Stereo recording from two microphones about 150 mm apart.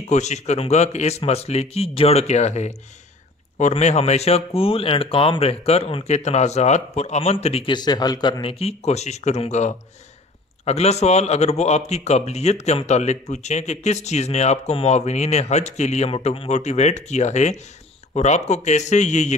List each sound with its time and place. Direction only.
0.1 s speech: 50° left (ahead or behind)
7.7 s speech: 25° left (ahead or behind); by 19.3 s 50° left (ahead or behind)